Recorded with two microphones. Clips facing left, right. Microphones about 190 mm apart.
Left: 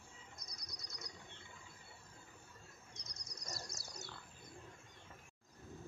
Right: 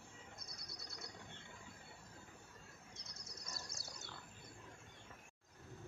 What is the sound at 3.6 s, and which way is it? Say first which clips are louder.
Pig: left 3 dB; 55° right (ahead or behind).